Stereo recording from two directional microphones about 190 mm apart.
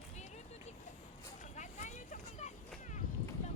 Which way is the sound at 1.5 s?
40° left (ahead or behind).